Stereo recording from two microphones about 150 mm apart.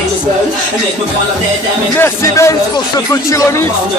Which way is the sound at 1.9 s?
15° left (ahead or behind).